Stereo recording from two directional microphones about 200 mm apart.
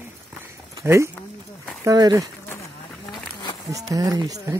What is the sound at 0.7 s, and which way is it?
Speech, 15° right (ahead or behind).